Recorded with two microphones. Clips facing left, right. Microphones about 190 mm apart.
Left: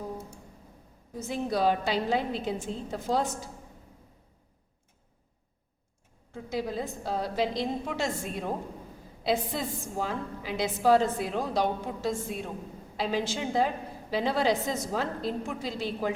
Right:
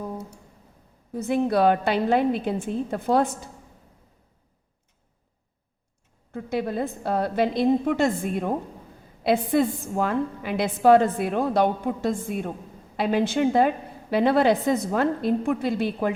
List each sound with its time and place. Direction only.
1.1 s a woman's voice: 60° right (ahead or behind)
6.3 s a woman's voice: 60° right (ahead or behind)